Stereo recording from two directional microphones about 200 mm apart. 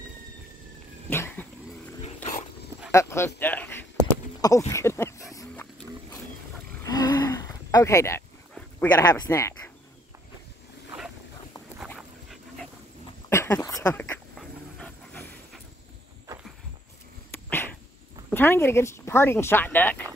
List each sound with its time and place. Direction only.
1.1 s dog: 10° left (ahead or behind)
2.9 s speech: 15° left (ahead or behind)
5.3 s pig: 15° left (ahead or behind)
6.8 s roaring cats: 20° left (ahead or behind)
8.5 s speech: 10° left (ahead or behind)
11.9 s dog: 5° left (ahead or behind)
17.3 s a sound: 10° left (ahead or behind)
18.3 s speech: 10° left (ahead or behind)